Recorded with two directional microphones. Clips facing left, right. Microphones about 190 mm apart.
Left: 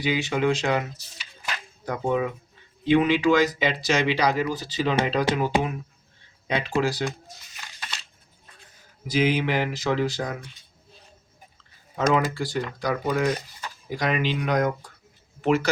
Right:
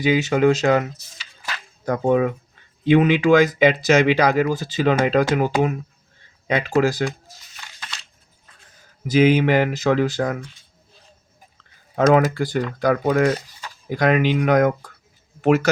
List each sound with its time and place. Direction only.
0.0 s speech: 45° right (ahead or behind)
9.0 s speech: 50° right (ahead or behind)
11.9 s speech: 55° right (ahead or behind)